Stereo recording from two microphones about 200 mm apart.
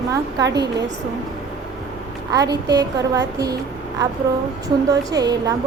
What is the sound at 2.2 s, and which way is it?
Speech, 20° right (ahead or behind).